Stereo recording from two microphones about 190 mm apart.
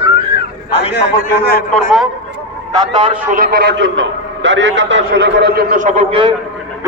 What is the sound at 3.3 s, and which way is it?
A man's voice, 50° right (ahead or behind).